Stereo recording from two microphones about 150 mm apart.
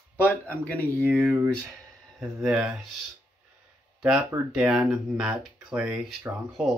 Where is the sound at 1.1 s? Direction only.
5° right (ahead or behind).